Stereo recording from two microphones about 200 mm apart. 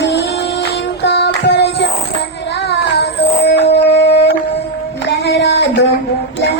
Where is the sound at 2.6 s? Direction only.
55° left (ahead or behind).